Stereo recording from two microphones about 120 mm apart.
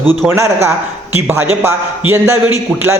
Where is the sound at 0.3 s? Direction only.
20° right (ahead or behind).